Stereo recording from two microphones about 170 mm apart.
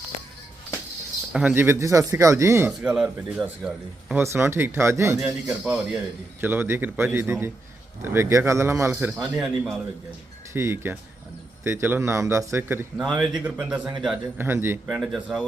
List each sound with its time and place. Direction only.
1.3 s a man's voice: 5° right (ahead or behind)
1.6 s speech: 15° right (ahead or behind)
9.1 s a man's voice: centre (ahead or behind)
10.5 s speech: 15° right (ahead or behind)
14.8 s a man's voice: centre (ahead or behind)